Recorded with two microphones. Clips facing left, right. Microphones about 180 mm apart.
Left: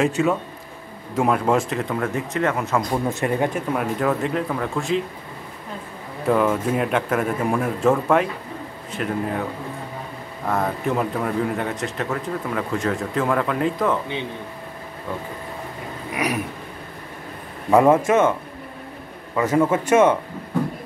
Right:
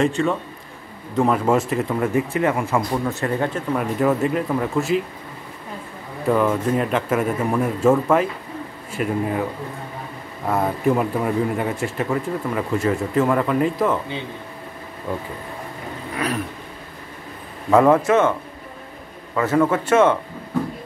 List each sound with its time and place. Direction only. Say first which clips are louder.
0.0 s speech: even; 5° left (ahead or behind)
3.1 s a man's voice: left 1 dB; 15° left (ahead or behind)
3.7 s speech: right 2 dB; 5° right (ahead or behind)
6.2 s speech: right 1 dB; centre (ahead or behind)
10.5 s speech: right 3 dB; 5° right (ahead or behind)
17.6 s a man's voice: right 1 dB; 20° left (ahead or behind)
19.3 s a man's voice: even; 20° left (ahead or behind)